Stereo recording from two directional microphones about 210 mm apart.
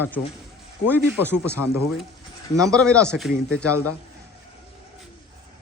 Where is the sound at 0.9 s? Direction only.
10° right (ahead or behind).